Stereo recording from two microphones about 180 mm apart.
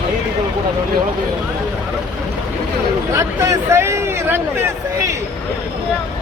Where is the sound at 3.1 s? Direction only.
15° right (ahead or behind).